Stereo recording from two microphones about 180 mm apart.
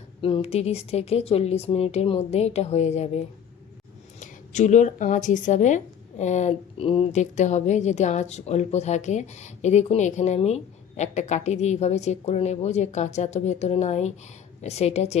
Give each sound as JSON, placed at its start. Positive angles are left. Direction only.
{"t": 0.2, "sound": "speech", "side_deg": 30}
{"t": 4.2, "sound": "speech", "side_deg": 40}